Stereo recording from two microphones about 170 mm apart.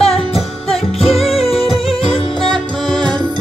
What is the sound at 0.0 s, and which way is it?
Music, 35° left (ahead or behind).